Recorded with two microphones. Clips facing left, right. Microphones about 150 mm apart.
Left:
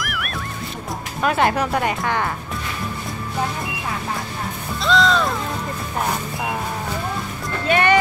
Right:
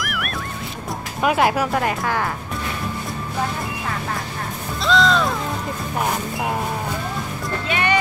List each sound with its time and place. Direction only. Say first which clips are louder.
0.0 s goose: right 1 dB; centre (ahead or behind)
1.2 s speech: right 1 dB; 10° right (ahead or behind)
4.8 s music: even; centre (ahead or behind)
7.6 s music: left 5 dB; 50° left (ahead or behind)